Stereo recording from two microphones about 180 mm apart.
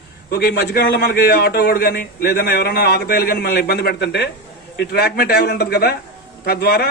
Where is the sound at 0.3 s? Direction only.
60° left (ahead or behind).